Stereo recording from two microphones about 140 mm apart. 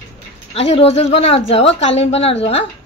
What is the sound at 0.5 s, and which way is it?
Speech, 45° left (ahead or behind).